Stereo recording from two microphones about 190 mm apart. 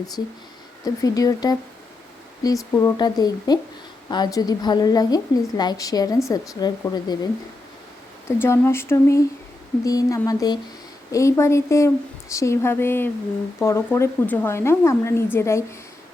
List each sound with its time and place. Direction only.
0.9 s a woman's voice: 20° left (ahead or behind)
8.4 s a woman's voice: 10° left (ahead or behind)